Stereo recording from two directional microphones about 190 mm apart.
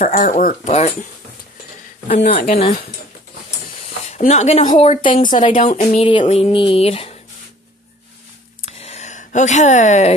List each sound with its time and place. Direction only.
0.2 s speech: 45° left (ahead or behind)
2.2 s speech: 50° left (ahead or behind)
4.1 s speech: 35° left (ahead or behind)
5.4 s speech: 40° left (ahead or behind)
8.6 s a sound: 35° left (ahead or behind)